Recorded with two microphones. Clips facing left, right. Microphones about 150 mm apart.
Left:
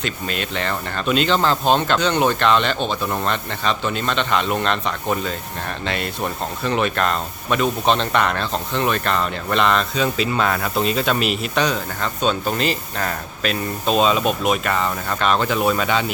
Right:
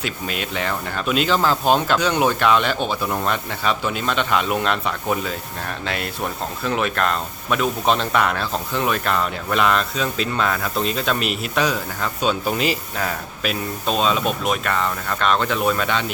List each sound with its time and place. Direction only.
0.0 s speech: 5° right (ahead or behind)